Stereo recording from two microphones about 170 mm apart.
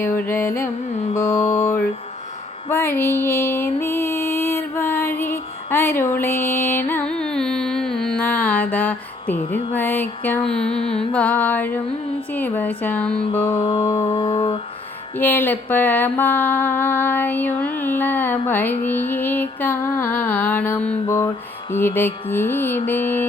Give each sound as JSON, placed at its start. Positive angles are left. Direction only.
{"t": 0.0, "sound": "mantra", "side_deg": 15}
{"t": 1.5, "sound": "mantra", "side_deg": 45}
{"t": 2.6, "sound": "music", "side_deg": 15}
{"t": 11.1, "sound": "mantra", "side_deg": 10}
{"t": 13.4, "sound": "mantra", "side_deg": 35}
{"t": 15.2, "sound": "mantra", "side_deg": 10}